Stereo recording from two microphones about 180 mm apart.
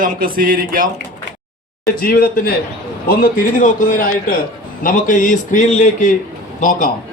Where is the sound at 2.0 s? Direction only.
55° left (ahead or behind).